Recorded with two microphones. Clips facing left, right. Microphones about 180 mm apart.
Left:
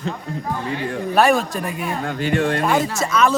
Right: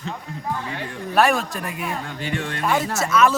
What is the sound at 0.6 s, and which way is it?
Speech, 50° left (ahead or behind).